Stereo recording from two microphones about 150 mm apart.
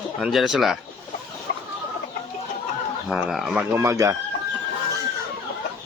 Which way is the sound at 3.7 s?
20° right (ahead or behind).